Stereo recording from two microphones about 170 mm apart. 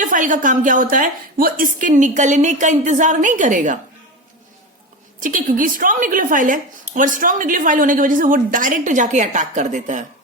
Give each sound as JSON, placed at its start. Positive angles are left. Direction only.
{"t": 0.0, "sound": "a woman's voice", "side_deg": -50}
{"t": 5.2, "sound": "a woman's voice", "side_deg": -55}